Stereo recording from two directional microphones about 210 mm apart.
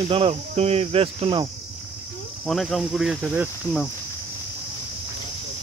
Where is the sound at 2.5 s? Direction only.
Centre (ahead or behind).